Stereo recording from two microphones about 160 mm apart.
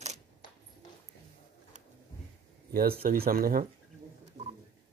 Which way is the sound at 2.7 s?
70° right (ahead or behind).